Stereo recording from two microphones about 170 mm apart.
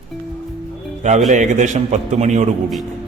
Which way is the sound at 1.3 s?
45° right (ahead or behind).